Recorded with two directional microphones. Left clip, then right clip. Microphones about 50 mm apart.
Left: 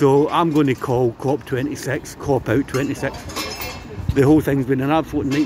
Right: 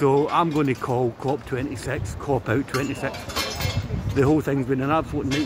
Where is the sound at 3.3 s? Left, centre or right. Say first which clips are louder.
Even; centre.